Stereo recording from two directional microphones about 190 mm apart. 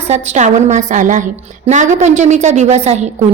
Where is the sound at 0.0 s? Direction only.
35° right (ahead or behind).